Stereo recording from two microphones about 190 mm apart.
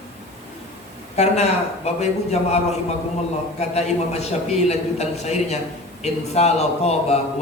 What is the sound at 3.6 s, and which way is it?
A man's voice, 35° left (ahead or behind).